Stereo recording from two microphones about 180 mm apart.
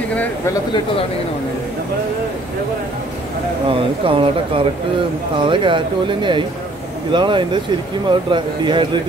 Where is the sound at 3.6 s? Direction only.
30° right (ahead or behind).